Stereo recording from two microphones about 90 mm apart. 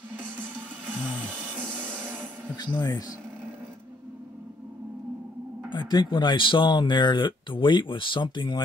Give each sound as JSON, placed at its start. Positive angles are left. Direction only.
{"t": 2.5, "sound": "speech", "side_deg": 50}
{"t": 5.7, "sound": "speech", "side_deg": 60}